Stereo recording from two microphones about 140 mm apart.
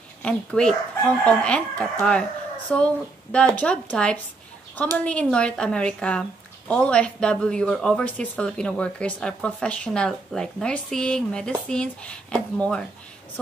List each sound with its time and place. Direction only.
0.2 s speech: 5° left (ahead or behind)